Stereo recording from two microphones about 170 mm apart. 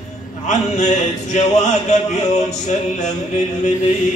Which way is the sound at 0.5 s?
45° left (ahead or behind).